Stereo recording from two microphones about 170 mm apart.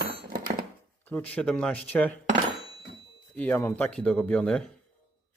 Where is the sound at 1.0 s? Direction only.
10° left (ahead or behind).